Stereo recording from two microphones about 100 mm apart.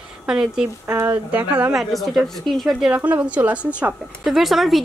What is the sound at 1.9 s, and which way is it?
Speech, centre (ahead or behind).